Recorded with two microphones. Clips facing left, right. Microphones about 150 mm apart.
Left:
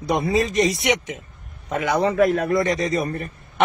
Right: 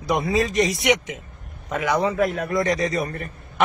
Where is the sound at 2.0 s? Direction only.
40° left (ahead or behind).